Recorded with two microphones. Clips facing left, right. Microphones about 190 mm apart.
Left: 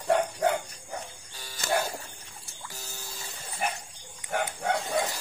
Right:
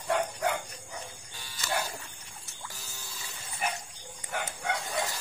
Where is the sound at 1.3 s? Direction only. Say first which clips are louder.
Left 5 dB; 45° left (ahead or behind).